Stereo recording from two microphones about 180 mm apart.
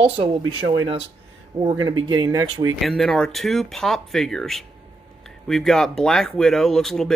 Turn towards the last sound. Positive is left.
turn(degrees=0)  # may be behind; listen again after turning